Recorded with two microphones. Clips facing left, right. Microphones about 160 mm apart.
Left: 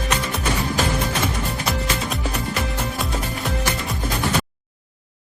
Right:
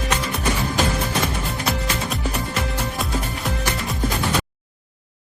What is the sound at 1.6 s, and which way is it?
Music, centre (ahead or behind).